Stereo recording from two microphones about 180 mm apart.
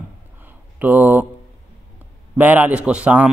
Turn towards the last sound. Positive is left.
turn(degrees=-10)  # may be behind; listen again after turning